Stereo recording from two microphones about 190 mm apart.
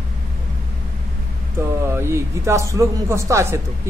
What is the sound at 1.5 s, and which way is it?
Speech, 15° right (ahead or behind).